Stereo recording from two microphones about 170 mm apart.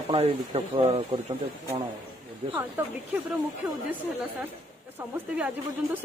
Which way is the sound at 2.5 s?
10° right (ahead or behind).